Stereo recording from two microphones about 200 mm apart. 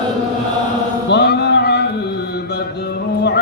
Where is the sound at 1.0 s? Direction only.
55° left (ahead or behind).